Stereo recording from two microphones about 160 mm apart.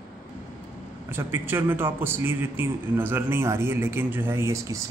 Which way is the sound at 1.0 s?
15° right (ahead or behind).